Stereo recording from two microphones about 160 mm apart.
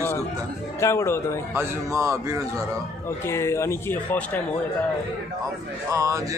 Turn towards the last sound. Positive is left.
turn(degrees=-20)  # may be behind; listen again after turning